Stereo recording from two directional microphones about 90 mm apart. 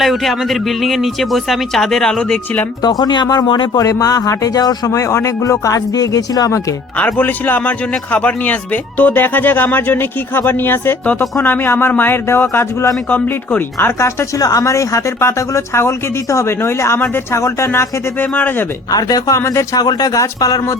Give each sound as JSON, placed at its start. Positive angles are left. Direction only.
{"t": 0.0, "sound": "speech", "side_deg": 0}
{"t": 2.8, "sound": "speech", "side_deg": 50}
{"t": 3.8, "sound": "speech", "side_deg": 40}
{"t": 4.9, "sound": "speech", "side_deg": 30}
{"t": 6.9, "sound": "a man's voice", "side_deg": 20}
{"t": 13.1, "sound": "a man's voice", "side_deg": 15}
{"t": 18.9, "sound": "speech", "side_deg": 45}